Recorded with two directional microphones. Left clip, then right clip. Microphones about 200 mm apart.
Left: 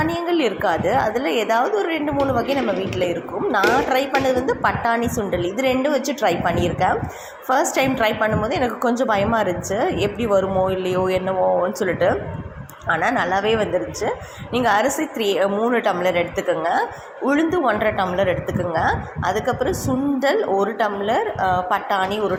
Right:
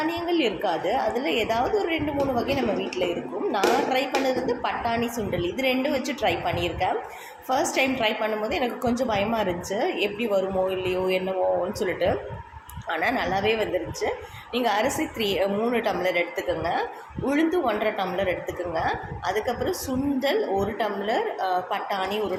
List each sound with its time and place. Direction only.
0.0 s a woman's voice: 20° left (ahead or behind)
17.2 s a woman's voice: 20° left (ahead or behind)